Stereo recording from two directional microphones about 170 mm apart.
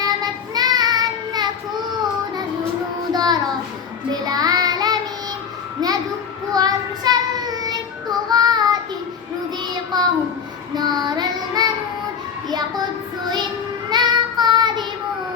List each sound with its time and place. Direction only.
0.5 s child singing: 25° right (ahead or behind)
3.1 s child singing: 25° right (ahead or behind)
5.8 s a sound: 25° right (ahead or behind)
6.5 s child singing: 25° right (ahead or behind)
9.9 s child singing: 25° right (ahead or behind)
13.9 s child singing: 25° right (ahead or behind)